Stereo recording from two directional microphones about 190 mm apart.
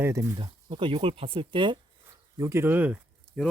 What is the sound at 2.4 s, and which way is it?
Speech, 15° right (ahead or behind).